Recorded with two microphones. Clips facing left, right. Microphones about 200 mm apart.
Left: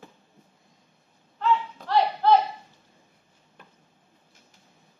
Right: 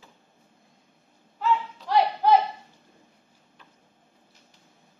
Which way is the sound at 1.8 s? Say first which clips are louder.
Right 1 dB; 10° right (ahead or behind).